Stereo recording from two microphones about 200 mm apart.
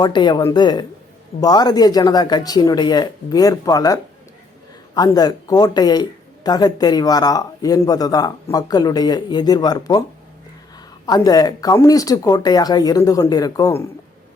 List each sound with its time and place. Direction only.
0.0 s speech: 20° left (ahead or behind)
11.0 s speech: 20° left (ahead or behind)